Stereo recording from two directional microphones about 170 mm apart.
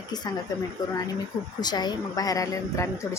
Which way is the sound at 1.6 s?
25° left (ahead or behind).